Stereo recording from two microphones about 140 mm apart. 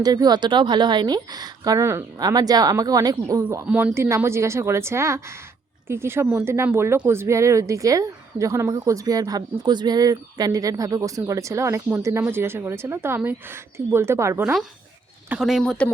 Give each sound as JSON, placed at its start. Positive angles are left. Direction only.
{"t": 0.0, "sound": "a woman's voice", "side_deg": -30}
{"t": 3.7, "sound": "speech", "side_deg": -5}
{"t": 3.9, "sound": "a woman's voice", "side_deg": -20}
{"t": 15.3, "sound": "speech", "side_deg": -5}